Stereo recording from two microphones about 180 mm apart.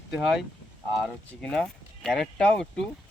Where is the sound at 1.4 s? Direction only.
5° left (ahead or behind).